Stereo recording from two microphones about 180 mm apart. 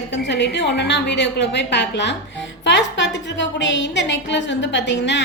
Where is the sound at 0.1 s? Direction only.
75° left (ahead or behind).